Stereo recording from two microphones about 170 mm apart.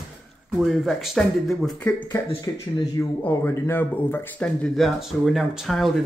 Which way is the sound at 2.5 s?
20° left (ahead or behind).